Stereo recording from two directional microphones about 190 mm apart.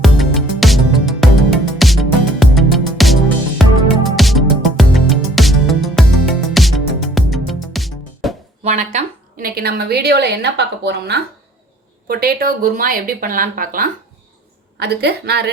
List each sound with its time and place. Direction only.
0.0 s music: centre (ahead or behind)
8.6 s a woman's voice: 40° right (ahead or behind)
14.8 s a woman's voice: 60° right (ahead or behind)